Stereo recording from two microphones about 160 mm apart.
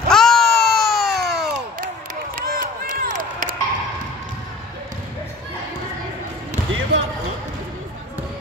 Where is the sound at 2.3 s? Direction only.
60° right (ahead or behind).